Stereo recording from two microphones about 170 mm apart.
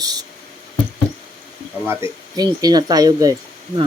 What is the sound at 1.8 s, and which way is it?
Speech, 15° right (ahead or behind).